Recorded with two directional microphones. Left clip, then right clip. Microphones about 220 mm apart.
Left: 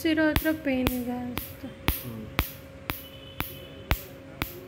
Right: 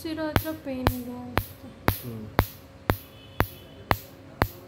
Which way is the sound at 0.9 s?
10° right (ahead or behind).